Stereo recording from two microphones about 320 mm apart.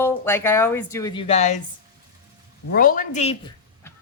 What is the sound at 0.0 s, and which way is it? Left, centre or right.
Speech, centre.